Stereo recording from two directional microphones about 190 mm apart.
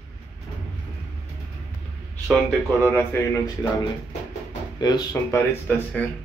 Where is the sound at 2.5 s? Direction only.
10° left (ahead or behind).